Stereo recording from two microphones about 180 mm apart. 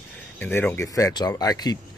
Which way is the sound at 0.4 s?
10° left (ahead or behind).